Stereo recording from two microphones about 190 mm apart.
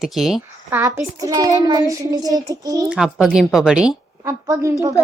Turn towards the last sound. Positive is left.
turn(degrees=-15)  # may be behind; listen again after turning